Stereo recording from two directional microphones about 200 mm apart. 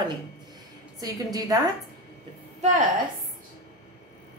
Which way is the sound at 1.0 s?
20° right (ahead or behind).